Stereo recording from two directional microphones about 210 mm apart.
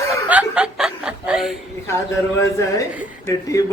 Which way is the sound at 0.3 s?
5° right (ahead or behind).